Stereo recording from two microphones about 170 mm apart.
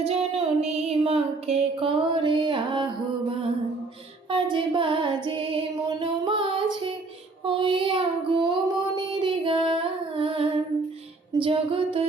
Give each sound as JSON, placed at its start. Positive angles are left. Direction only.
{"t": 0.0, "sound": "music", "side_deg": -35}
{"t": 4.3, "sound": "female singing", "side_deg": -30}
{"t": 7.4, "sound": "child singing", "side_deg": -30}
{"t": 9.0, "sound": "music", "side_deg": -25}